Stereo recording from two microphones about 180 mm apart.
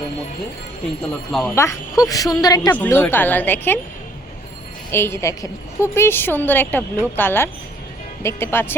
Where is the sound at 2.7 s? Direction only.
10° left (ahead or behind).